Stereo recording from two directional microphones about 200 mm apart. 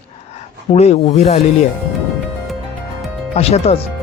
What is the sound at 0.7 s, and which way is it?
Speech, 35° left (ahead or behind).